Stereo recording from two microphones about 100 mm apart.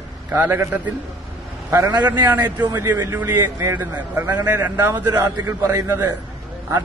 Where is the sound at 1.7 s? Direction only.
35° right (ahead or behind).